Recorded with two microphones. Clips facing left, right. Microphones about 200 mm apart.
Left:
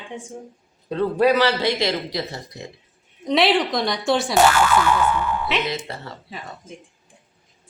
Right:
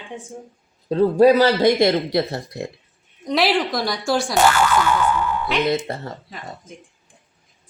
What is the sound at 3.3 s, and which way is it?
Speech, centre (ahead or behind).